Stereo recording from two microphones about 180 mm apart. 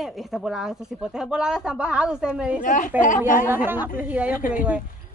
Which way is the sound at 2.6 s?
45° left (ahead or behind).